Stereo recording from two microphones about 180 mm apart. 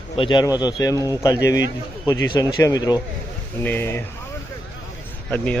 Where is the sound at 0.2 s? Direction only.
25° left (ahead or behind).